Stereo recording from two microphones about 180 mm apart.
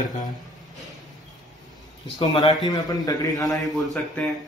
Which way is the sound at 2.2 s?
25° left (ahead or behind).